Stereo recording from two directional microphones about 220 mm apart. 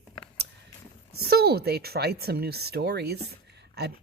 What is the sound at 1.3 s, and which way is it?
Speech, 45° right (ahead or behind).